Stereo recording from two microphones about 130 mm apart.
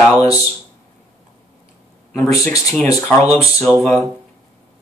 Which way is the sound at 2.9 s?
25° left (ahead or behind).